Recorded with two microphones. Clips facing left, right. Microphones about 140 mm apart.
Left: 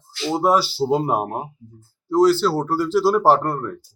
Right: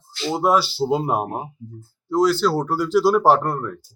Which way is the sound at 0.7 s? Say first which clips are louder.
Left 1 dB; 5° left (ahead or behind).